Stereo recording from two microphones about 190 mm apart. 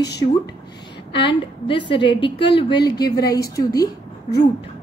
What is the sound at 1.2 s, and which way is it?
A woman's voice, 25° left (ahead or behind).